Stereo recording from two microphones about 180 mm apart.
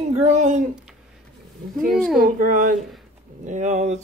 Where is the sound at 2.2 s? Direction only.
50° right (ahead or behind).